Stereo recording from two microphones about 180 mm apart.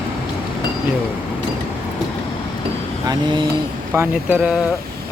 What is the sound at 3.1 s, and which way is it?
Speech, 25° right (ahead or behind).